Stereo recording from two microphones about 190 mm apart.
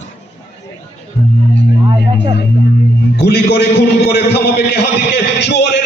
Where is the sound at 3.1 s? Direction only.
60° left (ahead or behind).